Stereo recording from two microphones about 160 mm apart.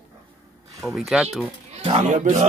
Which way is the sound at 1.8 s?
40° right (ahead or behind).